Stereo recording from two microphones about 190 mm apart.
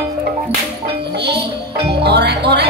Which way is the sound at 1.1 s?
60° right (ahead or behind).